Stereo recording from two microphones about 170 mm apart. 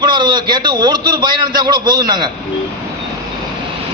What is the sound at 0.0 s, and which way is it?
A man's voice, 25° right (ahead or behind).